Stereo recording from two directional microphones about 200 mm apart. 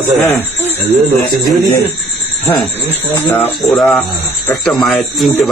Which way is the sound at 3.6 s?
Centre (ahead or behind).